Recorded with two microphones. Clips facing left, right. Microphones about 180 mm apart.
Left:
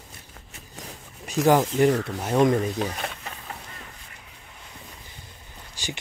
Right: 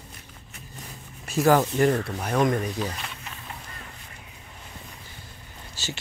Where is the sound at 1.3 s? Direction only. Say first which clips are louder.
Even; 15° left (ahead or behind).